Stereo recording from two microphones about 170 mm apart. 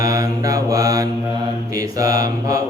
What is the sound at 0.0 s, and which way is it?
Mantra, 20° right (ahead or behind).